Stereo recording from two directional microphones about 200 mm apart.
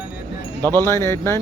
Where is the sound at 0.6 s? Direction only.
10° left (ahead or behind).